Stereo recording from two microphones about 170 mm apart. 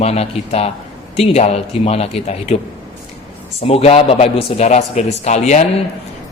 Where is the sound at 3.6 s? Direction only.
35° left (ahead or behind).